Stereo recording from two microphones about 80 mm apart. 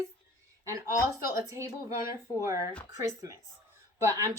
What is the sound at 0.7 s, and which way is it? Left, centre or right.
Speech, right.